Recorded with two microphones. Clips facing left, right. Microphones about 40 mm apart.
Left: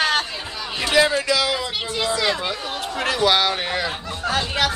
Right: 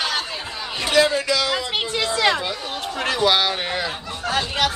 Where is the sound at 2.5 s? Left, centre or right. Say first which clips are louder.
Left 1 dB; centre.